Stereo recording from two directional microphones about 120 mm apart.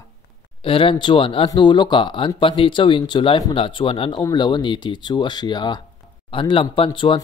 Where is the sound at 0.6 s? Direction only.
45° left (ahead or behind).